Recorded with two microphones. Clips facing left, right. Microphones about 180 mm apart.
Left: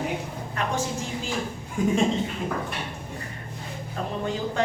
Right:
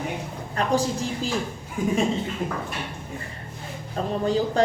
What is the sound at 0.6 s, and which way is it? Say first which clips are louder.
Speech: right 4 dB; 35° right (ahead or behind).